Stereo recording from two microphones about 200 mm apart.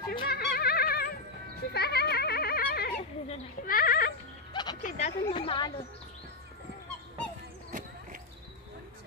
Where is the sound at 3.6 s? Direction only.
45° left (ahead or behind).